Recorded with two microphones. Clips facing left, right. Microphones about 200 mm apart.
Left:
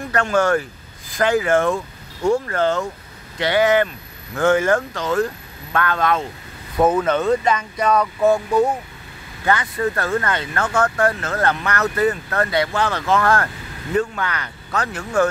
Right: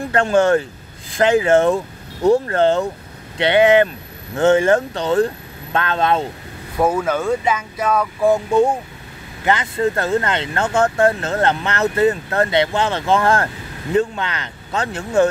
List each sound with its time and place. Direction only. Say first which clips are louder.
0.1 s speech: right 3 dB; 30° right (ahead or behind)
6.8 s speech: left 1 dB; 10° right (ahead or behind)
8.5 s speech: right 2 dB; 25° right (ahead or behind)